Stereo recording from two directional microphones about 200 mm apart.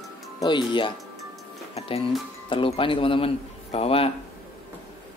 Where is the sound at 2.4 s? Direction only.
25° left (ahead or behind).